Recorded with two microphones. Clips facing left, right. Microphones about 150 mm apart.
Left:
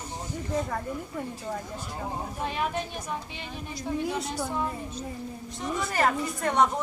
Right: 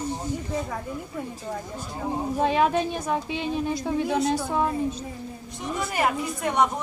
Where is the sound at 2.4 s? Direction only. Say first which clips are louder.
Right 9 dB; 90° right.